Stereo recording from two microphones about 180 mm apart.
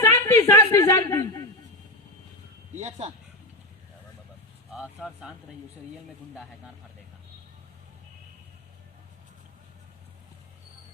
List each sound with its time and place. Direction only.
0.0 s a sound: 15° left (ahead or behind)
2.7 s speech: 35° right (ahead or behind)
4.7 s speech: 5° right (ahead or behind)